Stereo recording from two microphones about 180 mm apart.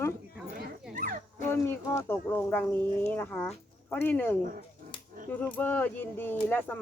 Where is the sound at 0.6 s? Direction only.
50° right (ahead or behind).